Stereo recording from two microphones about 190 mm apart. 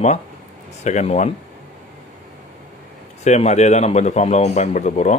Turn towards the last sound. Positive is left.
turn(degrees=35)  # may be behind; listen again after turning